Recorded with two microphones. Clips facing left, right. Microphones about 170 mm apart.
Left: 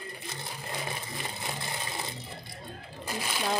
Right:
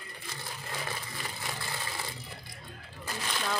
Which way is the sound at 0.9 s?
20° left (ahead or behind).